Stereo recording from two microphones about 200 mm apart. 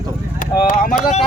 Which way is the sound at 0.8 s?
45° left (ahead or behind).